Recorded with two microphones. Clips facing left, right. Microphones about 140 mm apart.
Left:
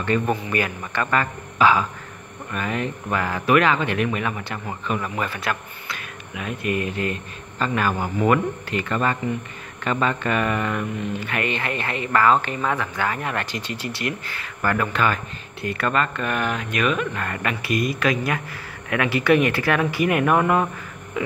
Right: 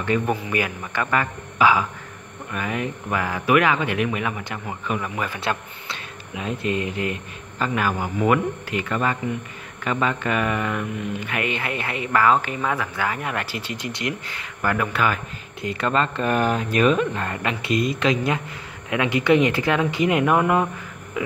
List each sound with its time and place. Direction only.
0.0 s speech: 10° right (ahead or behind)
5.4 s speech: 25° right (ahead or behind); by 15.1 s 10° right (ahead or behind)
15.6 s speech: 25° right (ahead or behind)